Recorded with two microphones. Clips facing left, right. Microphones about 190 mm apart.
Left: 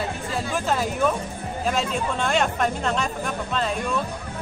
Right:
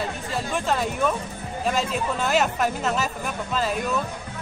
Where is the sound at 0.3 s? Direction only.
Centre (ahead or behind).